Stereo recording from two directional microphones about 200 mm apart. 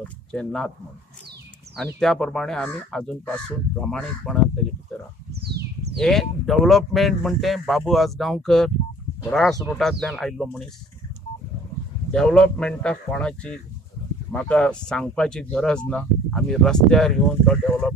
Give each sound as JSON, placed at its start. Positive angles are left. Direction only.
{"t": 0.3, "sound": "speech", "side_deg": 5}
{"t": 2.0, "sound": "speech", "side_deg": 0}
{"t": 5.3, "sound": "a sound", "side_deg": -55}
{"t": 5.9, "sound": "speech", "side_deg": 0}
{"t": 12.1, "sound": "speech", "side_deg": 0}